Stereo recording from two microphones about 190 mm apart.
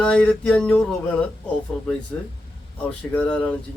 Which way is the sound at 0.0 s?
5° left (ahead or behind).